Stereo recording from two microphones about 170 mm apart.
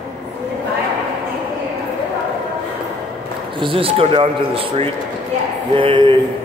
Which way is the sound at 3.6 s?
30° right (ahead or behind).